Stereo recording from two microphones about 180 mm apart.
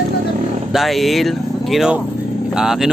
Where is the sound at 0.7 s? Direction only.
Centre (ahead or behind).